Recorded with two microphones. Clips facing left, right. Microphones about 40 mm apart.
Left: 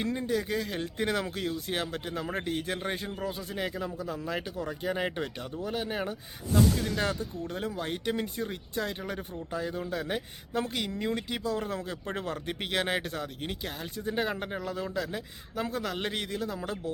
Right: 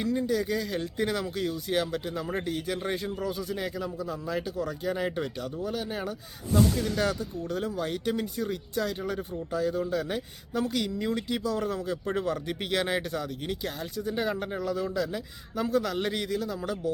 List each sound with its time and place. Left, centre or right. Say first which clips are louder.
0.0 s speech: right 3 dB; left
3.2 s speech: right 2 dB; left
6.5 s speech: right 1 dB; centre
13.9 s speech: right 1 dB; left
14.6 s speech: right 4 dB; left
16.4 s speech: right 3 dB; left